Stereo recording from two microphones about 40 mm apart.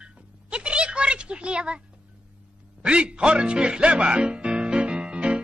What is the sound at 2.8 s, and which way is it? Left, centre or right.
Music, right.